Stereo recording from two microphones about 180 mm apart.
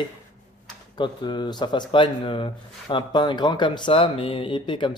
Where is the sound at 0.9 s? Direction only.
25° left (ahead or behind).